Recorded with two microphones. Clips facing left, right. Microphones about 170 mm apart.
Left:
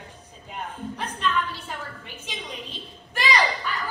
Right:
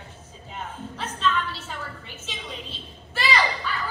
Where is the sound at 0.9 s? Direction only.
15° left (ahead or behind).